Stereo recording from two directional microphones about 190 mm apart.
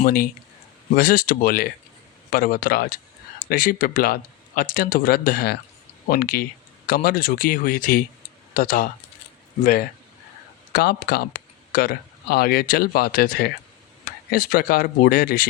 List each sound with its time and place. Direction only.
0.0 s speech: 50° left (ahead or behind)
10.7 s speech: 55° left (ahead or behind)